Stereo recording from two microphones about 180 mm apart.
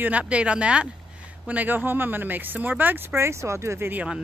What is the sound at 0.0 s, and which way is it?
Speech, 5° right (ahead or behind).